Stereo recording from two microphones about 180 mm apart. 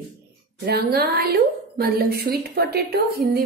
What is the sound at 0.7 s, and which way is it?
A woman's voice, 60° right (ahead or behind).